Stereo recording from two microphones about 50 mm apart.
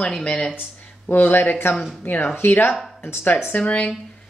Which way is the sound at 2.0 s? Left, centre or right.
Left.